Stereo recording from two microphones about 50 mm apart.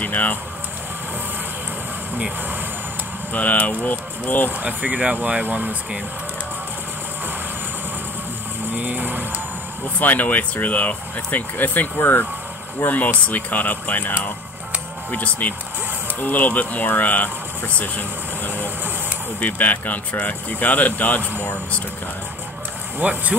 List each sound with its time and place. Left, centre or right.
0.0 s speech: left
3.3 s speech: left
4.5 s speech: right
8.7 s speech: right
9.9 s speech: left
12.8 s speech: left
19.4 s speech: left
21.2 s speech: right
22.9 s speech: right